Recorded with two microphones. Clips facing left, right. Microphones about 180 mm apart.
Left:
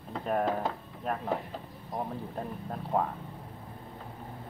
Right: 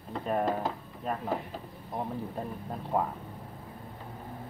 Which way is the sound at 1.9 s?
Centre (ahead or behind).